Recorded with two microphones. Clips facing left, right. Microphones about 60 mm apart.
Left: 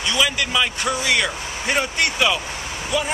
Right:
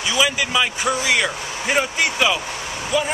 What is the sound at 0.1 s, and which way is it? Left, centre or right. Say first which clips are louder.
Speech: right 2 dB; centre.